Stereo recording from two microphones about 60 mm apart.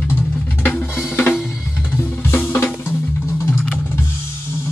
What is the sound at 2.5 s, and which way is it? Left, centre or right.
Drum, left.